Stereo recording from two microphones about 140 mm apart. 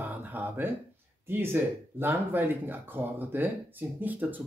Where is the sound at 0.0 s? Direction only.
15° right (ahead or behind).